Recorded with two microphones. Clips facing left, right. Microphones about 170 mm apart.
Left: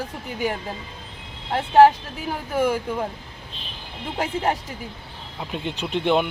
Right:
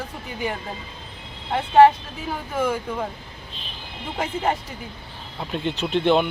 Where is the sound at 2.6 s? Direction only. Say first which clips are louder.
Left 2 dB; 10° left (ahead or behind).